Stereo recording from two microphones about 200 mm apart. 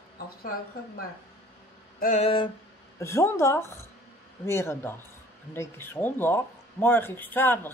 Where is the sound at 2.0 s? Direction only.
35° left (ahead or behind).